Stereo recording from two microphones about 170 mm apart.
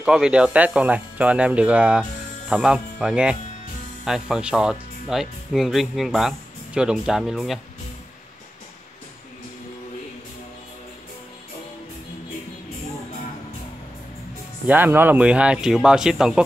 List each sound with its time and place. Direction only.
0.0 s speech: 5° right (ahead or behind)
14.7 s speech: 10° right (ahead or behind)